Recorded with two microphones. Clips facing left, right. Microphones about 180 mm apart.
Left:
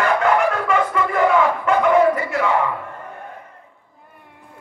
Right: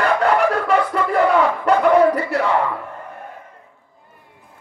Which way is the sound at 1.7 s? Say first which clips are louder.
Right 3 dB; 35° right (ahead or behind).